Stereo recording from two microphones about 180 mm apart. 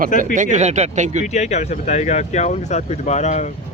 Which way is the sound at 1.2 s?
40° left (ahead or behind).